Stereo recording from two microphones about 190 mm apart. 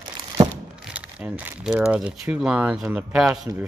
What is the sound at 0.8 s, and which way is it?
Speech, 5° right (ahead or behind).